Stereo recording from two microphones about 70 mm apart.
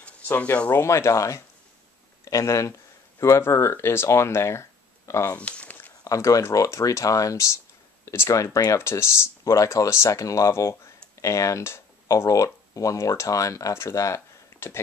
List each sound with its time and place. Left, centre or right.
0.0 s a sound: left
0.7 s speech: left
5.4 s crumpling: centre
6.0 s speech: left
8.7 s speech: left